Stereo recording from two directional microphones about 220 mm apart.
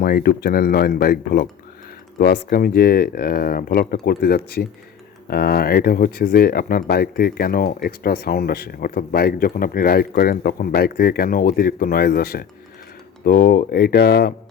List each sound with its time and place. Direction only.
0.0 s speech: 40° left (ahead or behind)